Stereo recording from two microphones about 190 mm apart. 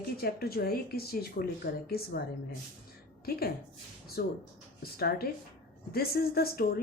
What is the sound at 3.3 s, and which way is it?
Speech, 55° left (ahead or behind).